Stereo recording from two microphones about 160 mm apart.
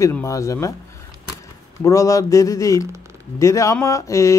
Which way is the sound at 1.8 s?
20° left (ahead or behind).